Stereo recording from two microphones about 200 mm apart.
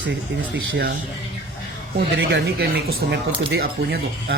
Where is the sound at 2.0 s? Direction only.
55° right (ahead or behind).